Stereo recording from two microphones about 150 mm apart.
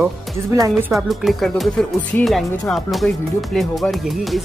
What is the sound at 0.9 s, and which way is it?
Speech, centre (ahead or behind).